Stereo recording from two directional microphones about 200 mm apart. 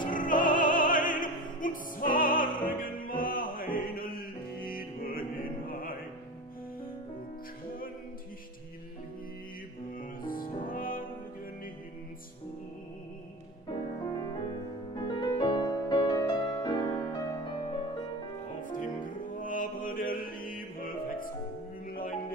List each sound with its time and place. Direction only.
0.1 s opera: 40° left (ahead or behind)
4.6 s music: 45° left (ahead or behind)
9.9 s music: 45° left (ahead or behind)
13.7 s music: 25° left (ahead or behind)
18.6 s music: 40° left (ahead or behind)